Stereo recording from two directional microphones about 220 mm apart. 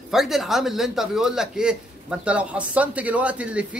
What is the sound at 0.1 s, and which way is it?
Speech, centre (ahead or behind).